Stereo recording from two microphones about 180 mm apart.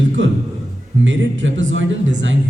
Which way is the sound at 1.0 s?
90° right.